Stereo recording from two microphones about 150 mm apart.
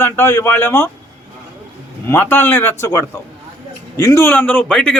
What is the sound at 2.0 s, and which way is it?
A man's voice, 15° left (ahead or behind).